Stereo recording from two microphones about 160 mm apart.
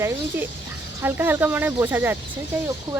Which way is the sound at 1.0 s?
15° right (ahead or behind).